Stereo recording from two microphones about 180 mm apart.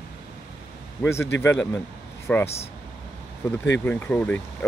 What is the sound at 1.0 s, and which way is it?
Speech, 15° left (ahead or behind).